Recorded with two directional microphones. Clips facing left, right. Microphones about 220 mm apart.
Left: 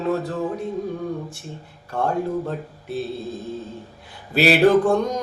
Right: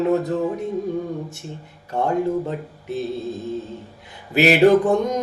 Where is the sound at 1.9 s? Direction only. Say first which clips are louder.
Right 2 dB; 20° right (ahead or behind).